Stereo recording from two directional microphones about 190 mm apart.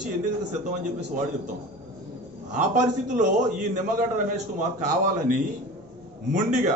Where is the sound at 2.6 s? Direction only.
40° right (ahead or behind).